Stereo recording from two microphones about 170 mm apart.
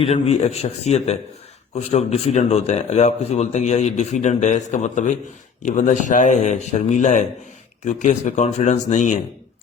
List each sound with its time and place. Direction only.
0.0 s a man's voice: 35° left (ahead or behind)